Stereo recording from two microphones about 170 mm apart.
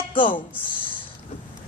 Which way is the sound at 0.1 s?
30° left (ahead or behind).